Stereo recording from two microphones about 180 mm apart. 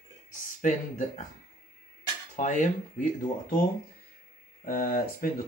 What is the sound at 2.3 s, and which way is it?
Speech, 40° left (ahead or behind).